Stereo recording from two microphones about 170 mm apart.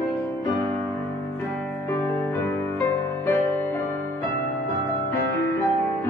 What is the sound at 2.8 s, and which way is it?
Music, 15° left (ahead or behind).